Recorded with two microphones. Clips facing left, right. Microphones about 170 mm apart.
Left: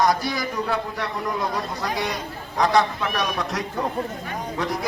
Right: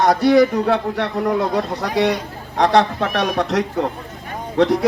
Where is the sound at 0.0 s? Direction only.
65° right (ahead or behind).